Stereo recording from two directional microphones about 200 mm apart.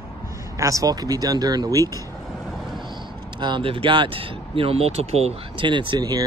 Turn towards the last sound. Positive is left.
turn(degrees=-20)  # may be behind; listen again after turning